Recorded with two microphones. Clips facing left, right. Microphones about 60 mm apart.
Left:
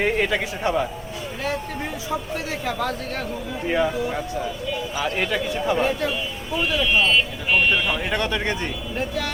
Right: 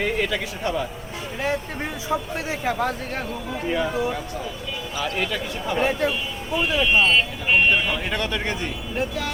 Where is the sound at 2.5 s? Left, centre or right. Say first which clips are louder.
Right 3 dB; centre.